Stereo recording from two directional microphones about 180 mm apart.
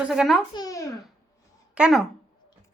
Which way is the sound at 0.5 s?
20° left (ahead or behind).